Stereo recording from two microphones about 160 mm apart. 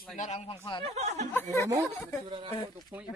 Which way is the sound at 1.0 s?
45° right (ahead or behind).